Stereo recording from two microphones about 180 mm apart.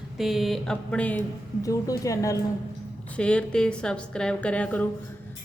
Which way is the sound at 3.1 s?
5° left (ahead or behind).